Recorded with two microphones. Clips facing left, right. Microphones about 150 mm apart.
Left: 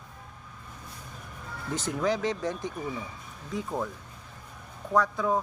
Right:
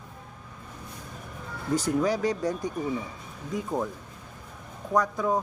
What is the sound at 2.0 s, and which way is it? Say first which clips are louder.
Speech: right 2 dB; 40° right (ahead or behind).